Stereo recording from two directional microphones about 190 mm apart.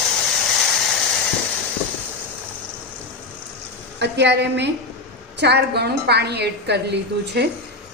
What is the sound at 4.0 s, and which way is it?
A woman's voice, 65° right (ahead or behind).